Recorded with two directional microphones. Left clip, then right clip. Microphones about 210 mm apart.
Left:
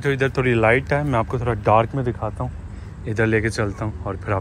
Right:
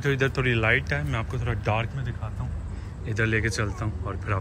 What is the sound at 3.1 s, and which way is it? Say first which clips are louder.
Speech: left 6 dB; 5° right (ahead or behind).